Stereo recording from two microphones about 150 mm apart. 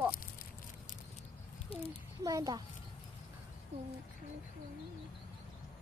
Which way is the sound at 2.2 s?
20° right (ahead or behind).